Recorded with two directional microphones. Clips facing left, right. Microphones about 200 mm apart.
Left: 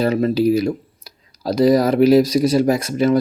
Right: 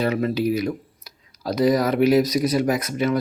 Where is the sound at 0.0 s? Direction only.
35° left (ahead or behind).